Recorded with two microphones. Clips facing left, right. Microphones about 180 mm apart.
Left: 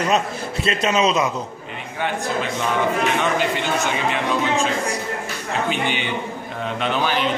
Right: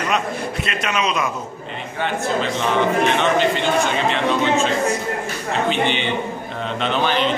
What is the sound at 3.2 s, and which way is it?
A man's voice, 10° left (ahead or behind).